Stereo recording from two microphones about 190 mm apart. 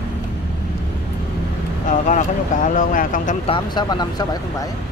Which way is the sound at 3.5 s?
25° left (ahead or behind).